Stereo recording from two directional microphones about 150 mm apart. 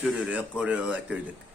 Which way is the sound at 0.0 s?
10° right (ahead or behind).